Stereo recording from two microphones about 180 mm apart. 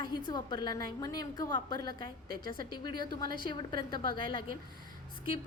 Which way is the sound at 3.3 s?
25° left (ahead or behind).